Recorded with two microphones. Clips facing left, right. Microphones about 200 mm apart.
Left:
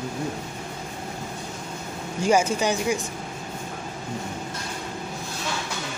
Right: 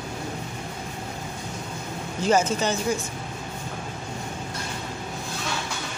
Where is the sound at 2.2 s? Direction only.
10° left (ahead or behind).